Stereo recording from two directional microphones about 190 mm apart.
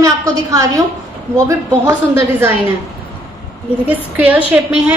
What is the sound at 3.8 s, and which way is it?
Speech, 10° right (ahead or behind).